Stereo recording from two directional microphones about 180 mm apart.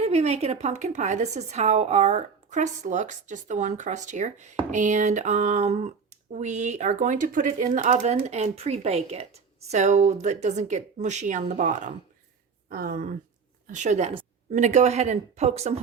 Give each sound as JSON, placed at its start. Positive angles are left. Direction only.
{"t": 0.0, "sound": "speech", "side_deg": -35}
{"t": 12.6, "sound": "speech", "side_deg": -55}